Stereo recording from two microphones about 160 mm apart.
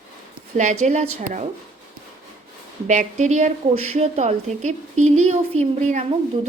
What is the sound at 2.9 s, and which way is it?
A woman's voice, 50° right (ahead or behind).